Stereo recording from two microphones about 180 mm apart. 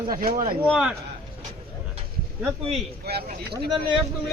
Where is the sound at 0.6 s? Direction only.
5° right (ahead or behind).